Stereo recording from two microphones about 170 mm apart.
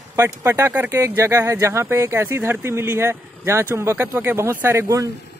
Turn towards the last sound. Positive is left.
turn(degrees=-15)  # may be behind; listen again after turning